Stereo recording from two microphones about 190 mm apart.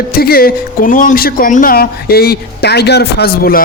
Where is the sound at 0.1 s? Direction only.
55° left (ahead or behind).